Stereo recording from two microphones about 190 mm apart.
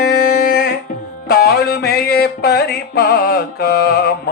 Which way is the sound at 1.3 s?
55° left (ahead or behind).